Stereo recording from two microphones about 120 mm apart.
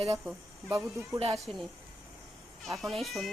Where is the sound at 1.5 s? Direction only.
55° right (ahead or behind).